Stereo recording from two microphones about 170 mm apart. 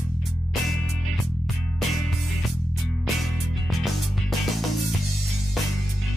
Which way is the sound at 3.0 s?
Centre (ahead or behind).